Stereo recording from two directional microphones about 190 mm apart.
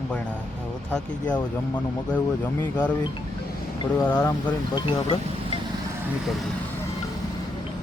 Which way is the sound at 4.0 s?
10° left (ahead or behind).